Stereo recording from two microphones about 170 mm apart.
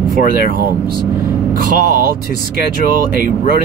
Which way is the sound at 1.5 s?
55° right (ahead or behind).